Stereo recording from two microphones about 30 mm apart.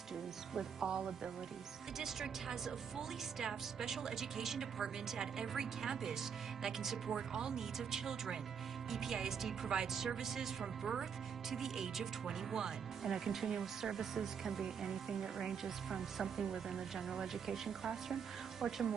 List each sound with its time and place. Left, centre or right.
0.8 s speech: centre